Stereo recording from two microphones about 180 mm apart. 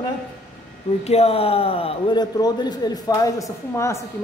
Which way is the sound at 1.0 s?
35° left (ahead or behind).